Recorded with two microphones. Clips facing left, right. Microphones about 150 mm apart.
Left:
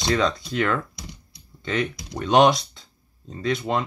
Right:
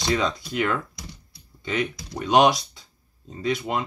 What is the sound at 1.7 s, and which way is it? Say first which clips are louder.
Speech: left 1 dB; 15° right (ahead or behind).